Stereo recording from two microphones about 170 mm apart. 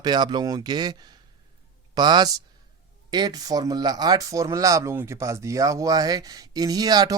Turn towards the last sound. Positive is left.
turn(degrees=-25)  # may be behind; listen again after turning